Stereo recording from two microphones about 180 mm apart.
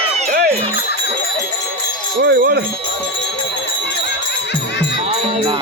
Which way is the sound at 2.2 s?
60° right (ahead or behind).